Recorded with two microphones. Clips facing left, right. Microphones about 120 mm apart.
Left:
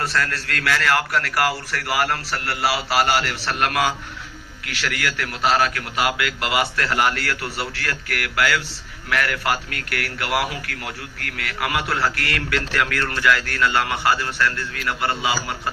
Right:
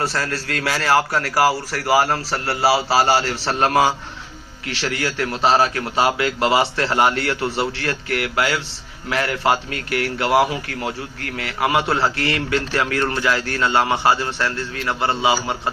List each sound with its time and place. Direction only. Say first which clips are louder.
0.0 s a man's voice: right 1 dB; 30° right (ahead or behind)